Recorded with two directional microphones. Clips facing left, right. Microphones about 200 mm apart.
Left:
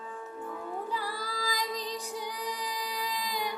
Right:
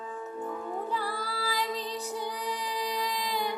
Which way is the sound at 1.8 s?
10° left (ahead or behind).